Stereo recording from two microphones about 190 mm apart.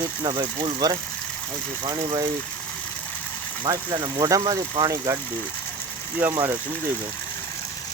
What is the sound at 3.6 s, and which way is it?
Speech, 20° right (ahead or behind).